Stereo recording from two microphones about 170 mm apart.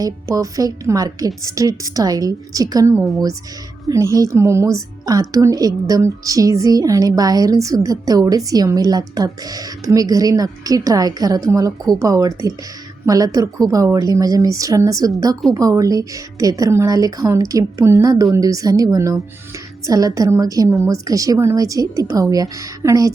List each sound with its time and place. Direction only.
0.0 s speech: 20° right (ahead or behind)